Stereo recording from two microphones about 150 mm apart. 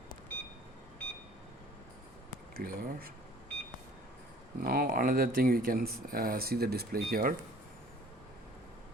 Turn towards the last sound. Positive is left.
turn(degrees=-75)  # may be behind; listen again after turning